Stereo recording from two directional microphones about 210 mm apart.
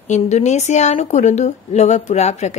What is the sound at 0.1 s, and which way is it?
A woman's voice, 35° left (ahead or behind).